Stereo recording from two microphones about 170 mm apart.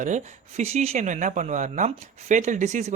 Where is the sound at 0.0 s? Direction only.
45° right (ahead or behind).